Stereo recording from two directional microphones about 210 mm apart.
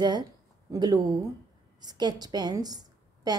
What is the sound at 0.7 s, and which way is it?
A woman's voice, 20° right (ahead or behind).